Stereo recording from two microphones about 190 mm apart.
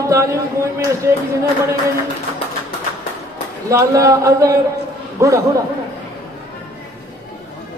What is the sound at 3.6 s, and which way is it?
Speech, 15° right (ahead or behind).